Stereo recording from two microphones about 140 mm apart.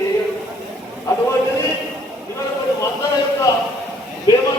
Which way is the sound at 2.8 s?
25° left (ahead or behind).